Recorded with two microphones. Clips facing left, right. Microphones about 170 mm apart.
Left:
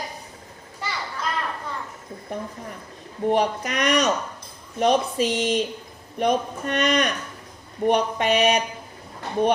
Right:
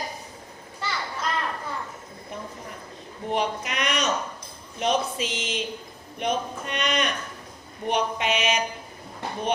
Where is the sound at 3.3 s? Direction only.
45° left (ahead or behind).